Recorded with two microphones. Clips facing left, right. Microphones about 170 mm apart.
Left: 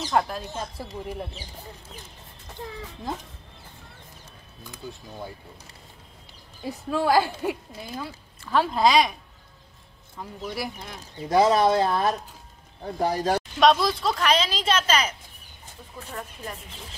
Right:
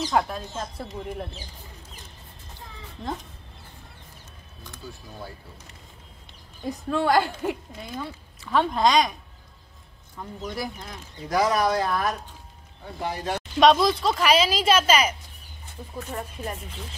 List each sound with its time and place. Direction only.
0.1 s a woman's voice: centre (ahead or behind)
6.6 s a woman's voice: 5° left (ahead or behind)
10.1 s speech: 5° left (ahead or behind)
11.2 s speech: 25° left (ahead or behind)
12.8 s speech: 40° left (ahead or behind)
13.6 s speech: centre (ahead or behind)